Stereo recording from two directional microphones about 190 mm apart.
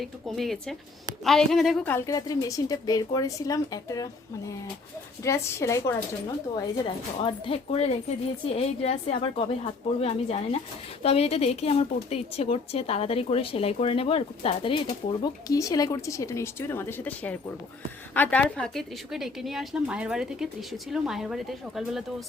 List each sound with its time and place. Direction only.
0.0 s a woman's voice: centre (ahead or behind); by 4.1 s 20° left (ahead or behind)
5.2 s a woman's voice: 15° left (ahead or behind)
6.8 s a woman's voice: 30° left (ahead or behind); by 22.0 s centre (ahead or behind)